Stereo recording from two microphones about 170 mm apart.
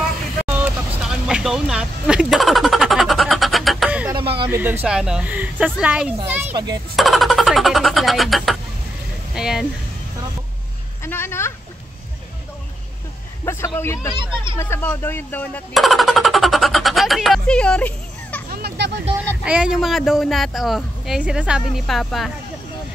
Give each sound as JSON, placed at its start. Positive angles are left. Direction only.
{"t": 0.6, "sound": "vehicle", "side_deg": -5}
{"t": 4.1, "sound": "a sound", "side_deg": -30}
{"t": 4.5, "sound": "speech", "side_deg": -10}
{"t": 7.0, "sound": "speech", "side_deg": 0}
{"t": 11.1, "sound": "speech", "side_deg": 15}
{"t": 13.7, "sound": "speech", "side_deg": 15}
{"t": 15.7, "sound": "a sound", "side_deg": 0}
{"t": 18.5, "sound": "music", "side_deg": -70}
{"t": 19.1, "sound": "speech", "side_deg": -10}